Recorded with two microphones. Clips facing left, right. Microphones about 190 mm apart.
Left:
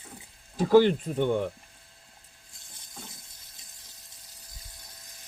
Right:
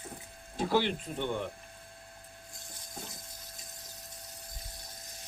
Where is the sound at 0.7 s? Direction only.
45° left (ahead or behind).